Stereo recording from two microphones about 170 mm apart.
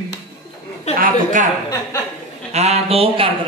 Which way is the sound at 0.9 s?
55° right (ahead or behind).